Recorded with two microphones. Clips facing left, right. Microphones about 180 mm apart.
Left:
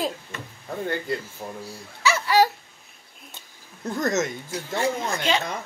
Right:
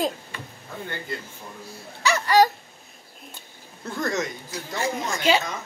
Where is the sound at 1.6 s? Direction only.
5° left (ahead or behind).